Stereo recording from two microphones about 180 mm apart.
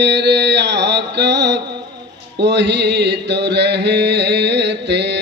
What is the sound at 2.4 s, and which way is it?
Mantra, 75° right (ahead or behind).